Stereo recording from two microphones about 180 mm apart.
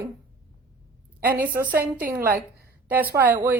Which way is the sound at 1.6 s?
55° right (ahead or behind).